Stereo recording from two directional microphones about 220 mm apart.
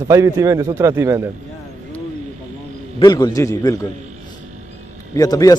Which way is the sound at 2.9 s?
20° left (ahead or behind).